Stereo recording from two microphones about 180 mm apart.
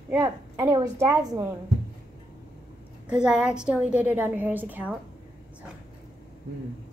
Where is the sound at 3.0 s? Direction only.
5° right (ahead or behind).